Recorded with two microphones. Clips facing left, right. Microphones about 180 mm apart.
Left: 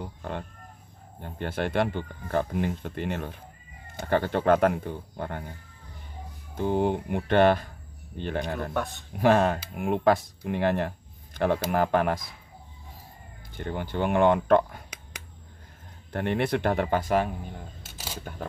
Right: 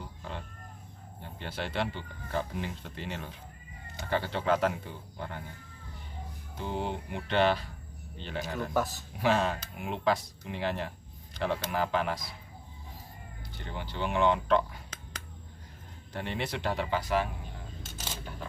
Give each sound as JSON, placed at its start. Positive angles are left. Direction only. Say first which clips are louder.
{"t": 0.0, "sound": "chicken", "louder": "left 7 dB", "side_deg": 55}
{"t": 1.2, "sound": "speech", "louder": "left 8 dB", "side_deg": 50}
{"t": 6.5, "sound": "speech", "louder": "left 9 dB", "side_deg": 50}
{"t": 8.7, "sound": "speech", "louder": "right 5 dB", "side_deg": 0}
{"t": 9.2, "sound": "speech", "louder": "left 6 dB", "side_deg": 55}
{"t": 13.6, "sound": "speech", "louder": "left 7 dB", "side_deg": 50}
{"t": 16.1, "sound": "speech", "louder": "left 9 dB", "side_deg": 55}